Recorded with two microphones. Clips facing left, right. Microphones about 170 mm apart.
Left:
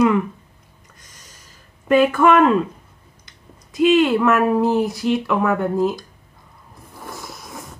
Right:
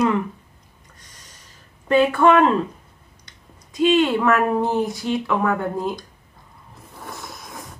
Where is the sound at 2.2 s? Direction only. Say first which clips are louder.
Even; 30° right (ahead or behind).